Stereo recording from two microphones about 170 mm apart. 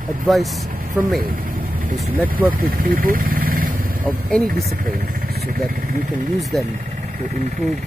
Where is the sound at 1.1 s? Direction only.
60° right (ahead or behind).